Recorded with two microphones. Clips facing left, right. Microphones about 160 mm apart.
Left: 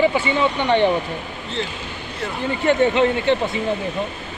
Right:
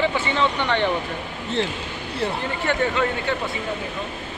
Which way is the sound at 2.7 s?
25° left (ahead or behind).